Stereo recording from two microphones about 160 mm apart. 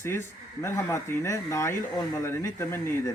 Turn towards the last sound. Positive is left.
turn(degrees=20)  # may be behind; listen again after turning